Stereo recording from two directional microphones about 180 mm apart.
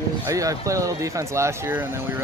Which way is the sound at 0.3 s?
20° right (ahead or behind).